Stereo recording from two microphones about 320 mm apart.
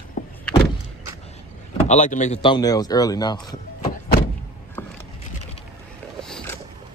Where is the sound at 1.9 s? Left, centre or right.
Left.